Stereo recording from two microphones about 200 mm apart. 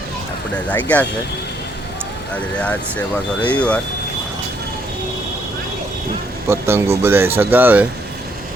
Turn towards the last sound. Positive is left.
turn(degrees=-10)  # may be behind; listen again after turning